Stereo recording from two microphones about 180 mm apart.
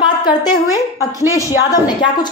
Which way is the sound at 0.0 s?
25° left (ahead or behind).